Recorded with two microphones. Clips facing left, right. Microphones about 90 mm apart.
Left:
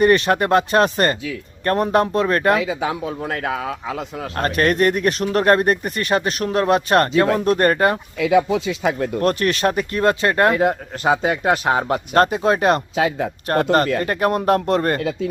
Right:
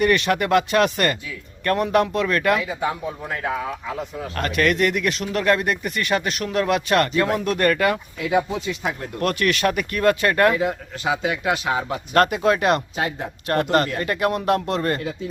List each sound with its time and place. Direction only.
0.0 s speech: 35° left (ahead or behind)
2.6 s speech: 90° left
4.4 s speech: 40° left (ahead or behind)
8.6 s speech: 90° left
9.2 s speech: 35° left (ahead or behind)
10.5 s speech: 50° left (ahead or behind)
12.1 s speech: 30° left (ahead or behind); by 15.0 s 45° left (ahead or behind)